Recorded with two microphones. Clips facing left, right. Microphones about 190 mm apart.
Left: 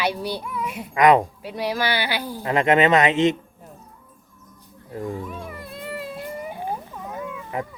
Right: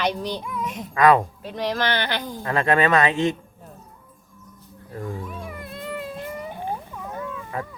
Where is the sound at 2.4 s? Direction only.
20° left (ahead or behind).